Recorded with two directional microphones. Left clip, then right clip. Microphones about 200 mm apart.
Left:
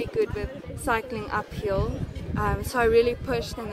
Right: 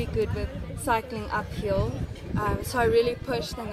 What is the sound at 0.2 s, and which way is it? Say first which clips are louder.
A woman's voice: left 2 dB; 35° left (ahead or behind).